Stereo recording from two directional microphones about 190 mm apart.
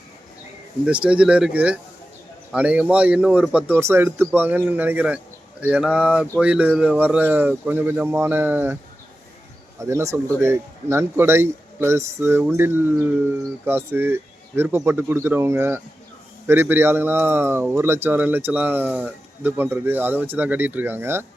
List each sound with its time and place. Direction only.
0.9 s speech: 5° right (ahead or behind)
9.8 s speech: 15° right (ahead or behind)